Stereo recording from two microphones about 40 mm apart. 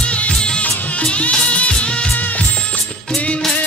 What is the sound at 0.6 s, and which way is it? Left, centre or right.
Music, left.